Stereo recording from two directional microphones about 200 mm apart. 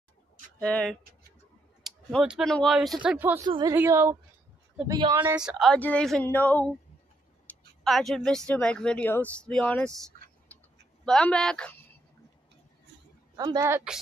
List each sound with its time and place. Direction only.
0.6 s speech: 5° left (ahead or behind)
3.4 s a woman's voice: 20° right (ahead or behind)
5.4 s speech: centre (ahead or behind)
11.1 s speech: 5° left (ahead or behind)
13.4 s a woman's voice: 20° right (ahead or behind)